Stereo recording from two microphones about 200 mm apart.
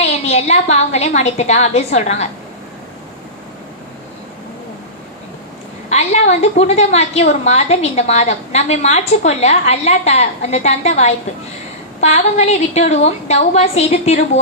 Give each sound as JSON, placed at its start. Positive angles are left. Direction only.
{"t": 0.3, "sound": "a woman's voice", "side_deg": 35}
{"t": 5.9, "sound": "a woman's voice", "side_deg": 35}